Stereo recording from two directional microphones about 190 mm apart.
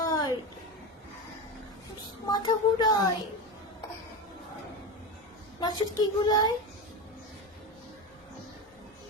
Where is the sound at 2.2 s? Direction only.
20° left (ahead or behind).